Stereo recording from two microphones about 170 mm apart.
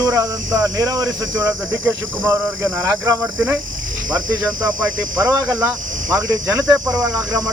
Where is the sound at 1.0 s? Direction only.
10° right (ahead or behind).